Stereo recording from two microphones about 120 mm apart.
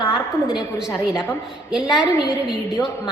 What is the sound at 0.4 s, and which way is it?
A woman's voice, 5° right (ahead or behind).